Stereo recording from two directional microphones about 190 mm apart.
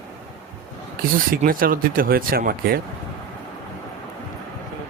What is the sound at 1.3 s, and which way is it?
Speech, 50° right (ahead or behind).